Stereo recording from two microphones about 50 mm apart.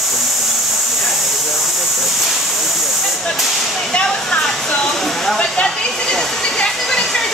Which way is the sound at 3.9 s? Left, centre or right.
Centre.